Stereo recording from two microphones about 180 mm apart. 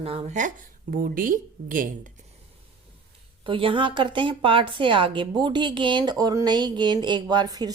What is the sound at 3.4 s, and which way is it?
A woman's voice, 30° right (ahead or behind).